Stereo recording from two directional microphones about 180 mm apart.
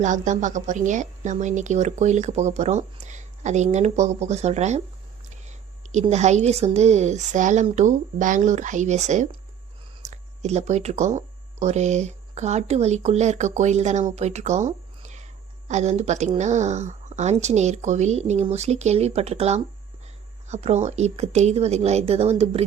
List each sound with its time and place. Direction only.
0.0 s a woman's voice: 45° right (ahead or behind)